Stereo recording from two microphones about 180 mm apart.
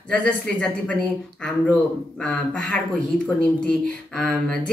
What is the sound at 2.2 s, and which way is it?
Speech, 5° left (ahead or behind).